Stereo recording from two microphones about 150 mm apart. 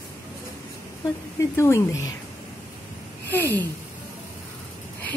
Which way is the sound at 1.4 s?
20° left (ahead or behind).